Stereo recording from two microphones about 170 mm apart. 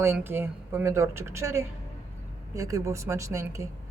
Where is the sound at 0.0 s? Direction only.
15° right (ahead or behind).